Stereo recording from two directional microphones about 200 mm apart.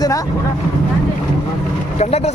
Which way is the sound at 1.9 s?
35° left (ahead or behind).